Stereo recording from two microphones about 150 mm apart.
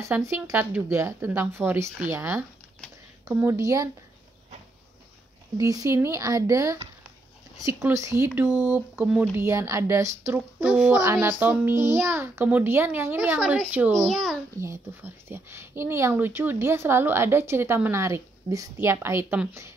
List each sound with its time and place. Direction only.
0.0 s speech: 20° right (ahead or behind)
5.6 s speech: 20° right (ahead or behind); by 9.3 s 5° right (ahead or behind)
9.4 s speech: 20° right (ahead or behind)
13.9 s a child's voice: centre (ahead or behind)
14.6 s speech: 15° right (ahead or behind)